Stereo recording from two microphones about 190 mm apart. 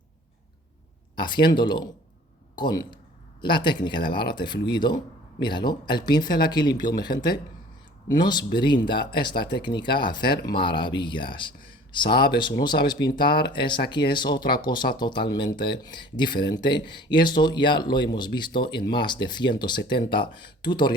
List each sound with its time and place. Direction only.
1.1 s speech: 25° left (ahead or behind)